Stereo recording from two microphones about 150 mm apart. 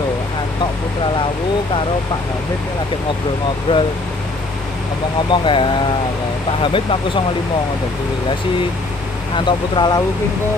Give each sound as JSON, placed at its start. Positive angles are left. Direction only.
{"t": 3.7, "sound": "speech", "side_deg": 30}
{"t": 5.3, "sound": "speech", "side_deg": 35}
{"t": 9.4, "sound": "speech", "side_deg": 30}